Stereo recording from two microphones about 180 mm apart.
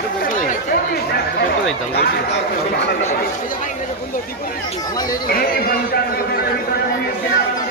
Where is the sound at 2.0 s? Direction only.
65° left (ahead or behind).